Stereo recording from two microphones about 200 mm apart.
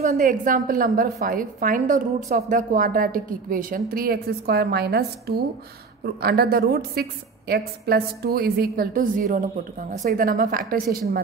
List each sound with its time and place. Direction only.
0.2 s a woman's voice: 45° right (ahead or behind)